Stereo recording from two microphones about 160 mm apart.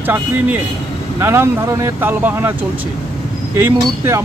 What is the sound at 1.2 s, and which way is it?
Speech, 15° right (ahead or behind).